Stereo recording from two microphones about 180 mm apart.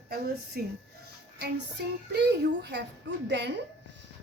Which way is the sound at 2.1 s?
70° right (ahead or behind).